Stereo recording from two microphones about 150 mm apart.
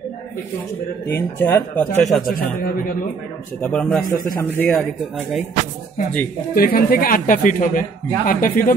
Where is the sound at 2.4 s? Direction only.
70° left (ahead or behind).